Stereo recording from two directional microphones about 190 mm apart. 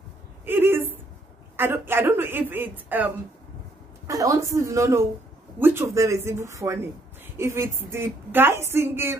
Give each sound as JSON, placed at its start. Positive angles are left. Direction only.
{"t": 0.5, "sound": "a sound", "side_deg": -10}
{"t": 1.6, "sound": "a woman's voice", "side_deg": -10}
{"t": 4.1, "sound": "a woman's voice", "side_deg": -15}